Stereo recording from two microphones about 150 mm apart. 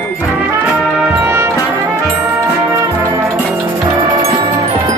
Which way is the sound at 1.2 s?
15° right (ahead or behind).